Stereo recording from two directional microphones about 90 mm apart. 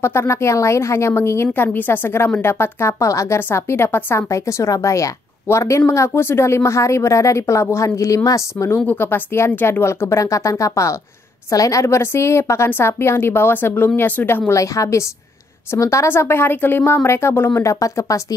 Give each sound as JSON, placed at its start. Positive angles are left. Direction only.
{"t": 0.0, "sound": "a woman's voice", "side_deg": 30}
{"t": 14.5, "sound": "a woman's voice", "side_deg": 35}